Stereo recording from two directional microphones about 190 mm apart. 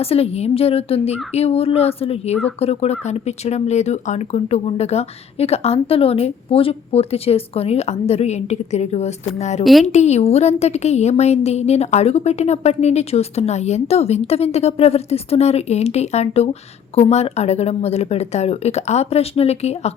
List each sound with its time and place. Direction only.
0.0 s a woman's voice: 30° left (ahead or behind)